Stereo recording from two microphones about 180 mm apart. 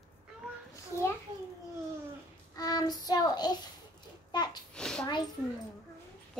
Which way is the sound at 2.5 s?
20° left (ahead or behind).